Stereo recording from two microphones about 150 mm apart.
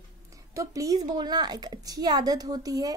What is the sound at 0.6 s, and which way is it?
A woman's voice, 20° right (ahead or behind).